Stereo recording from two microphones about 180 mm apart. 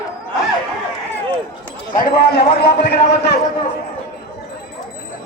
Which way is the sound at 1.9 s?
55° left (ahead or behind).